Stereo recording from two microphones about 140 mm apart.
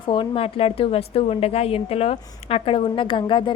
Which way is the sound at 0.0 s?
40° left (ahead or behind).